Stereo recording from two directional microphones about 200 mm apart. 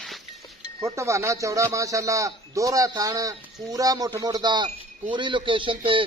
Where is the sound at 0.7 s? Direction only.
15° right (ahead or behind).